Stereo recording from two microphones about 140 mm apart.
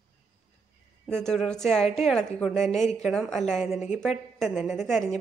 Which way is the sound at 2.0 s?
5° left (ahead or behind).